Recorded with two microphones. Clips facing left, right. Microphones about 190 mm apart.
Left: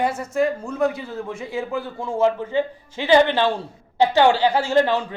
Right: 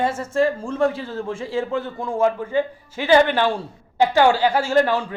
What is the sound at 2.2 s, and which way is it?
A man's voice, 20° left (ahead or behind).